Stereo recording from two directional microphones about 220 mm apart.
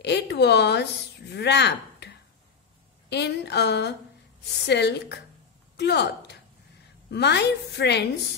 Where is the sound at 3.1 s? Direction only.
50° left (ahead or behind).